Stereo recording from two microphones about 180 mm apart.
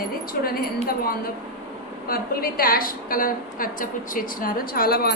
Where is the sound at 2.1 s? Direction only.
55° left (ahead or behind).